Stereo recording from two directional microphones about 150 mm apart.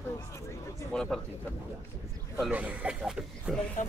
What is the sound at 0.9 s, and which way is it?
Speech, 5° left (ahead or behind).